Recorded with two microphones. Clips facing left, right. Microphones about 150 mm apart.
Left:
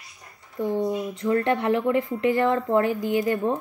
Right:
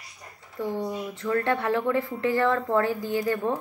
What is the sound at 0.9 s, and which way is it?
Speech, 20° left (ahead or behind).